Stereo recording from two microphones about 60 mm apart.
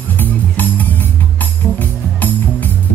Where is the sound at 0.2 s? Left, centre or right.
Left.